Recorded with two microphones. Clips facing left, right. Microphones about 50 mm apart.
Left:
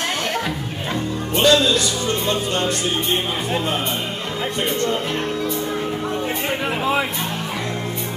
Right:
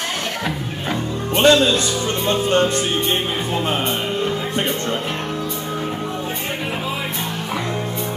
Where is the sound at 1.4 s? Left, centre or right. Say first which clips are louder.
Right 2 dB; right.